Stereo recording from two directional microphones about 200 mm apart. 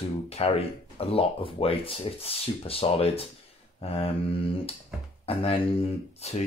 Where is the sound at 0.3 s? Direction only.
30° left (ahead or behind).